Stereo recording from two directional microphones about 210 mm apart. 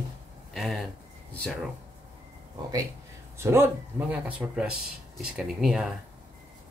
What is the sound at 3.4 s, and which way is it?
Speech, 10° right (ahead or behind).